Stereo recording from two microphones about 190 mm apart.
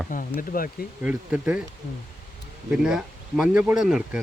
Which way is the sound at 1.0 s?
5° right (ahead or behind).